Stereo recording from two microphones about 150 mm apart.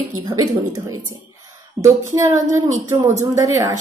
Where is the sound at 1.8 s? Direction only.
20° right (ahead or behind).